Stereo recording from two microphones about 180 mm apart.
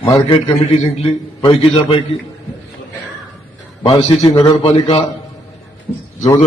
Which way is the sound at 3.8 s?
25° left (ahead or behind).